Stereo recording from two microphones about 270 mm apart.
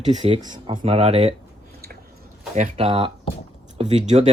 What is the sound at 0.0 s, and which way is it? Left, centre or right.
Speech, right.